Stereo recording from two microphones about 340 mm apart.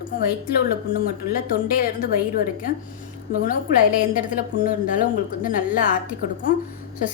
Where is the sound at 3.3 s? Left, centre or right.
Left.